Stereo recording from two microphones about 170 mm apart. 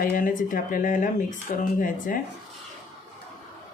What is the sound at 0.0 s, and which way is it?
Speech, 55° left (ahead or behind).